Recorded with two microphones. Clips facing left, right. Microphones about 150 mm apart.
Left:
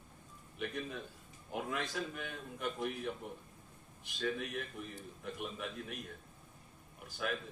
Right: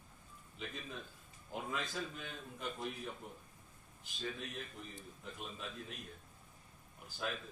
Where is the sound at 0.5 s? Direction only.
65° left (ahead or behind).